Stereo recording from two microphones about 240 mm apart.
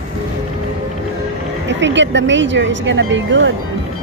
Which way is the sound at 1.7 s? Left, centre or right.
Right.